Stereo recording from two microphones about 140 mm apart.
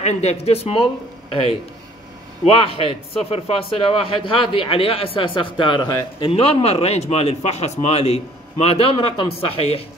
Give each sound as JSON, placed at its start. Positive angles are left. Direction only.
{"t": 0.0, "sound": "a man's voice", "side_deg": 50}